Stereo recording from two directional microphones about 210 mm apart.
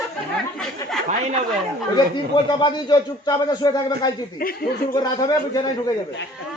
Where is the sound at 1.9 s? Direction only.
20° left (ahead or behind).